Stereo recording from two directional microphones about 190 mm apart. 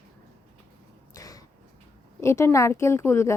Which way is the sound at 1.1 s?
20° left (ahead or behind).